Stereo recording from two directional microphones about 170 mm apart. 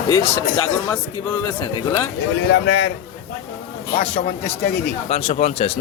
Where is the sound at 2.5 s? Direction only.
90° left.